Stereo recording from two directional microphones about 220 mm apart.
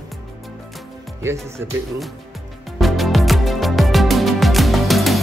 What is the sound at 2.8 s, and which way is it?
Music, centre (ahead or behind).